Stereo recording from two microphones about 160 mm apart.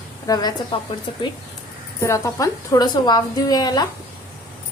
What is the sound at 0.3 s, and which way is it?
Speech, 20° left (ahead or behind).